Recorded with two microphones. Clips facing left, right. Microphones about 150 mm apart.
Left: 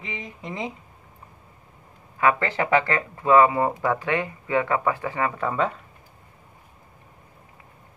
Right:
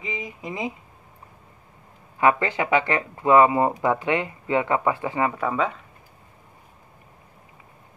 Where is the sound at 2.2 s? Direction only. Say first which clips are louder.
Right 1 dB; 20° right (ahead or behind).